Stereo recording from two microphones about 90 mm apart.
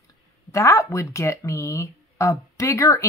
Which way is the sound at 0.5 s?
35° left (ahead or behind).